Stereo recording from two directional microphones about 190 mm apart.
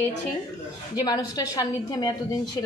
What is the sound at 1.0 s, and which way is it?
A woman's voice, 20° left (ahead or behind).